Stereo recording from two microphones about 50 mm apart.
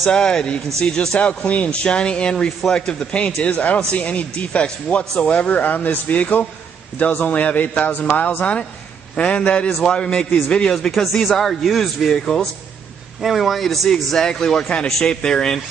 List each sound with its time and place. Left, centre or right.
0.1 s a man's voice: centre
5.3 s a man's voice: left
9.8 s a man's voice: centre
13.2 s a man's voice: centre